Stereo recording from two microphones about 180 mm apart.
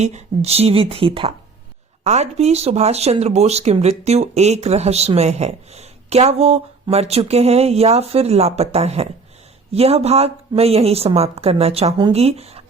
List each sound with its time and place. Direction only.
0.0 s speech: 40° right (ahead or behind)